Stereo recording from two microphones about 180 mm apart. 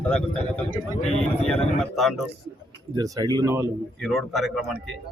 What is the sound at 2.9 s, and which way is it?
Speech, 20° right (ahead or behind).